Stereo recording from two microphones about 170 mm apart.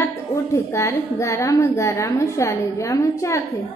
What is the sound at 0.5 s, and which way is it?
A woman's voice, 15° left (ahead or behind).